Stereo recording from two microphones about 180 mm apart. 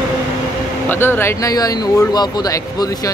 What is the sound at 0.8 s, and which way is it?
Speech, 10° left (ahead or behind).